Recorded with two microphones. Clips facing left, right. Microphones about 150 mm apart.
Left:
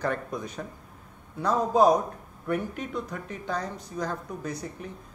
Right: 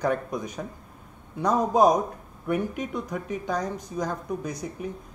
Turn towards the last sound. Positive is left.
turn(degrees=-15)  # may be behind; listen again after turning